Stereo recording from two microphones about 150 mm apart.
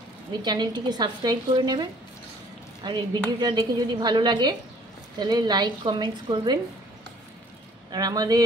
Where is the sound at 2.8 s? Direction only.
25° right (ahead or behind).